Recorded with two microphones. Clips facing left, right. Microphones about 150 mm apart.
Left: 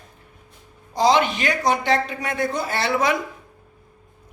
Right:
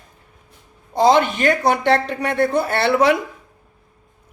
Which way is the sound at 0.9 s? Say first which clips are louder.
Right 3 dB; 55° right (ahead or behind).